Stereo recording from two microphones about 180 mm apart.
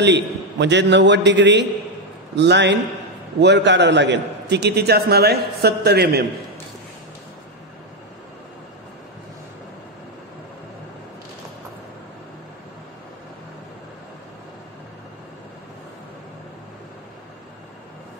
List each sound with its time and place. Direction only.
0.0 s a man's voice: 75° right (ahead or behind)